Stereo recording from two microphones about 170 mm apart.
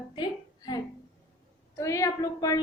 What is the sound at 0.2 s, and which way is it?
Music, 25° left (ahead or behind).